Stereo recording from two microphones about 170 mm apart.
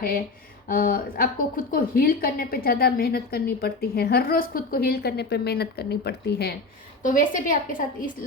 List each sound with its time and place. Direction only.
0.7 s a woman's voice: 60° left (ahead or behind); by 6.5 s 75° left (ahead or behind)
7.0 s a woman's voice: 50° left (ahead or behind)